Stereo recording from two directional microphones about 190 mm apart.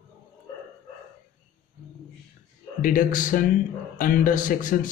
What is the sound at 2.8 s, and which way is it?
Speech, 45° left (ahead or behind).